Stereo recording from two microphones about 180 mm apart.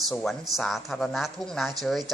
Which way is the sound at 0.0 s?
Centre (ahead or behind).